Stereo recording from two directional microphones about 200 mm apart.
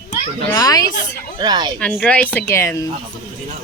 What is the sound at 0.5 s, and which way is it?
Speech, 20° left (ahead or behind).